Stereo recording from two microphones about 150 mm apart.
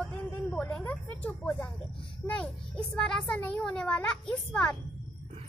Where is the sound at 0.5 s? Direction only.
5° left (ahead or behind).